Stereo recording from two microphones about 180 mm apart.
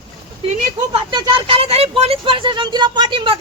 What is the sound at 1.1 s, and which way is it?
Speech, 30° right (ahead or behind).